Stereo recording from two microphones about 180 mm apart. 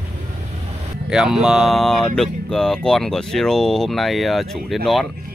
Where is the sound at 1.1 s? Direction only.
5° right (ahead or behind).